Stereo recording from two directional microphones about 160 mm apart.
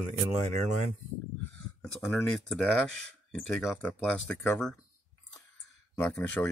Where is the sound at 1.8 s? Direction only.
Centre (ahead or behind).